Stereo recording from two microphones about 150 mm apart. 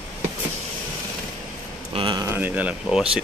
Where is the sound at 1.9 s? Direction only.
30° right (ahead or behind).